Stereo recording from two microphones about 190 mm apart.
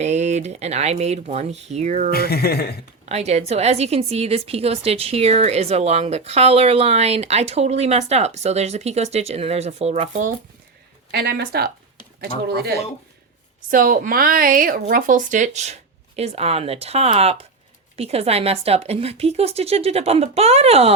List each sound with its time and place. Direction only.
0.0 s a woman's voice: 35° right (ahead or behind)
2.0 s speech: 55° left (ahead or behind)
3.1 s a woman's voice: 35° right (ahead or behind)
11.1 s speech: 60° right (ahead or behind)
13.6 s a woman's voice: 45° right (ahead or behind)